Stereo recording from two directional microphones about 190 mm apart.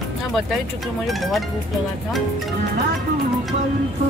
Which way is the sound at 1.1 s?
Centre (ahead or behind).